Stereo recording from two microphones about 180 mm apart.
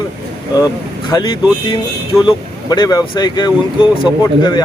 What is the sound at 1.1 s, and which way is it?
Speech, 25° left (ahead or behind).